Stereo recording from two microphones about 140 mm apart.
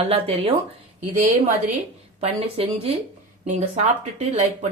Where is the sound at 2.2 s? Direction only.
45° right (ahead or behind).